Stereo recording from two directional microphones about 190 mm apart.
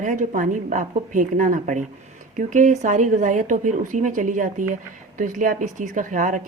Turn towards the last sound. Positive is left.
turn(degrees=-45)  # may be behind; listen again after turning